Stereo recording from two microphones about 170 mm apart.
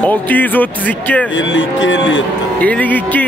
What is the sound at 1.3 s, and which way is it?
Speech, 90° left.